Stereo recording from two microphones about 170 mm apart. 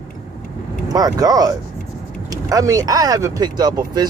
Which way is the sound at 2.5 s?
20° right (ahead or behind).